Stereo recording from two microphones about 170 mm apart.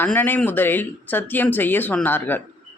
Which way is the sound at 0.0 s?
10° left (ahead or behind).